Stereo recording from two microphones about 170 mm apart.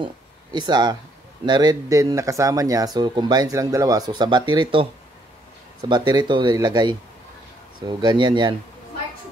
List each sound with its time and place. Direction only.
0.0 s speech: 25° right (ahead or behind)
5.9 s speech: 25° right (ahead or behind)
8.0 s speech: 25° right (ahead or behind)